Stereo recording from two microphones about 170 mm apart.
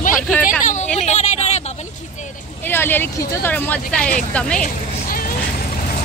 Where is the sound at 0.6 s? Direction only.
45° left (ahead or behind).